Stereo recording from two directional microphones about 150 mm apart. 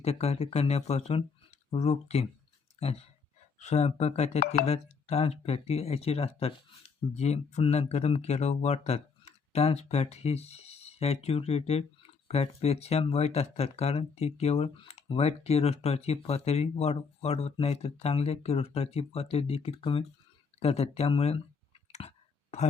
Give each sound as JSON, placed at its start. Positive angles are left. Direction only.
{"t": 0.0, "sound": "speech", "side_deg": 45}
{"t": 4.4, "sound": "speech", "side_deg": 90}
{"t": 4.6, "sound": "speech", "side_deg": 45}
{"t": 22.0, "sound": "clicking", "side_deg": 45}